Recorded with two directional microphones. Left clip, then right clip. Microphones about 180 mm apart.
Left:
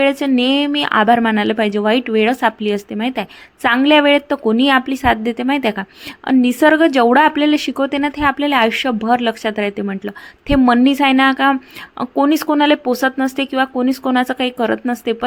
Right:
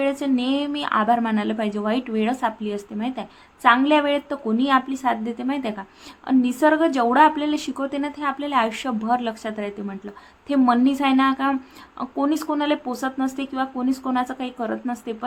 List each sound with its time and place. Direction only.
0.0 s speech: 35° left (ahead or behind)